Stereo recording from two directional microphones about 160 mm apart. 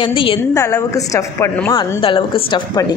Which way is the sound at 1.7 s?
30° left (ahead or behind).